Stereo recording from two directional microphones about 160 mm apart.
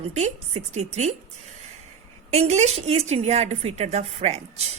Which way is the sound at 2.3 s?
45° right (ahead or behind).